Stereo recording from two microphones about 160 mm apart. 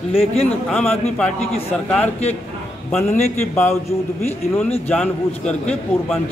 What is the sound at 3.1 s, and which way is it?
Speech, 45° left (ahead or behind).